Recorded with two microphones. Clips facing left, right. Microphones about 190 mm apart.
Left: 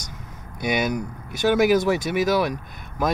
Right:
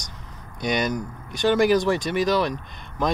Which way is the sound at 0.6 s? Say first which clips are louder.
Left 1 dB; 5° left (ahead or behind).